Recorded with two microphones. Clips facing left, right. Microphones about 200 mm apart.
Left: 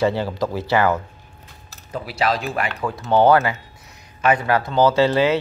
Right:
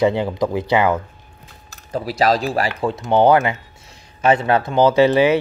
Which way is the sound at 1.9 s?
35° right (ahead or behind).